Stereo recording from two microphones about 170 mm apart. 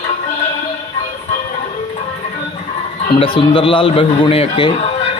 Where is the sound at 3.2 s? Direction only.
30° left (ahead or behind).